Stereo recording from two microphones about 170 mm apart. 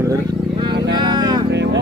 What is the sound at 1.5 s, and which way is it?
Music, 90° right.